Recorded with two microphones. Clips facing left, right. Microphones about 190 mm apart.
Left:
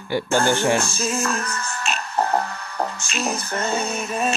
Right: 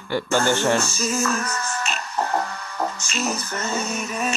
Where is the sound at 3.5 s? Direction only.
35° left (ahead or behind).